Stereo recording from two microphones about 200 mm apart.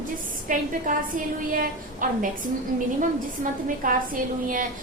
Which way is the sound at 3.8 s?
45° right (ahead or behind).